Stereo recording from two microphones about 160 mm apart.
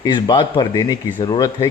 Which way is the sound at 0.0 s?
30° left (ahead or behind).